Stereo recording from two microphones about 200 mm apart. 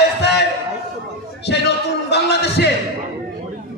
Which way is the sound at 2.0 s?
55° left (ahead or behind).